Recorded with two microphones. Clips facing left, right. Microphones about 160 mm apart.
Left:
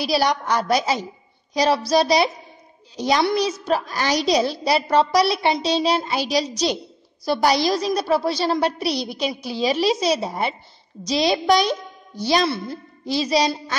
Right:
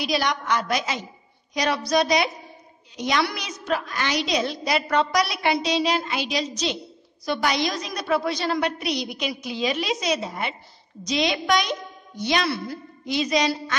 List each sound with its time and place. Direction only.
0.0 s a woman's voice: 35° left (ahead or behind)